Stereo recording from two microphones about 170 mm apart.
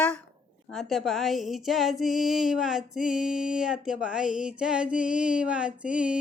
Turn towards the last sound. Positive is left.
turn(degrees=-5)  # may be behind; listen again after turning